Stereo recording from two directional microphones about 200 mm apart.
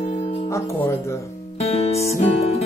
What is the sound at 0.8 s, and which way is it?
Speech, 10° left (ahead or behind).